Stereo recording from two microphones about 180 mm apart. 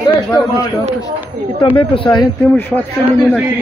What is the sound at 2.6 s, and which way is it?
Speech, 5° left (ahead or behind).